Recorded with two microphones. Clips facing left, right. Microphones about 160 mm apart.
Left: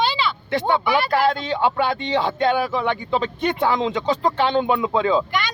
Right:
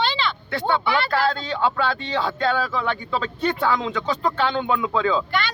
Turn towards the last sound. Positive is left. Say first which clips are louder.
# left 2 dB
turn(degrees=15)  # may be behind; listen again after turning